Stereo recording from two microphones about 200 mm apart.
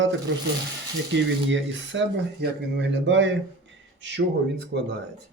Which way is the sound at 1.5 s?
65° right (ahead or behind).